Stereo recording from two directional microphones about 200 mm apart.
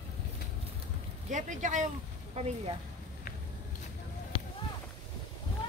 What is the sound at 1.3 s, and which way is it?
Speech, 40° right (ahead or behind).